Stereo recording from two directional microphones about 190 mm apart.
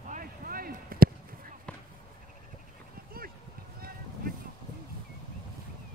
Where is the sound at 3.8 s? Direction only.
50° right (ahead or behind).